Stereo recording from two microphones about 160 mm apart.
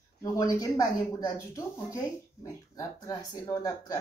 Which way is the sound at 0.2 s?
20° left (ahead or behind).